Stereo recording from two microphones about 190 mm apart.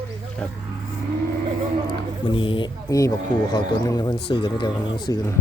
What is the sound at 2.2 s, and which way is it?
Speech, 25° left (ahead or behind).